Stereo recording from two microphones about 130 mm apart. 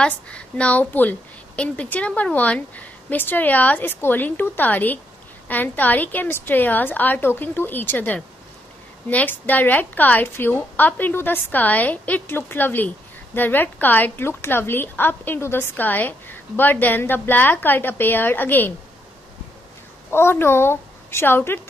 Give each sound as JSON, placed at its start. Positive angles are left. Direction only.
{"t": 0.0, "sound": "a woman's voice", "side_deg": 10}
{"t": 20.1, "sound": "speech", "side_deg": 20}